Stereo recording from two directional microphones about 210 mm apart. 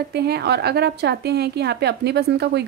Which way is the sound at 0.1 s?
50° right (ahead or behind).